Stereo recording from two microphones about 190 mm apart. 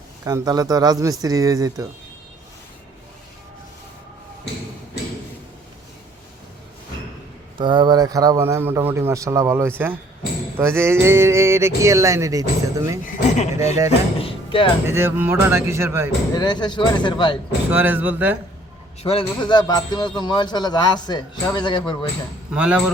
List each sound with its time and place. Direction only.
0.3 s speech: 20° right (ahead or behind)
7.6 s speech: 25° right (ahead or behind)
13.1 s a sound: 40° left (ahead or behind)
14.2 s speech: 30° left (ahead or behind)
14.8 s speech: 10° right (ahead or behind)
16.3 s a man's voice: 20° left (ahead or behind)
17.7 s speech: 10° right (ahead or behind)
19.0 s a man's voice: 25° left (ahead or behind)
22.5 s speech: 5° right (ahead or behind)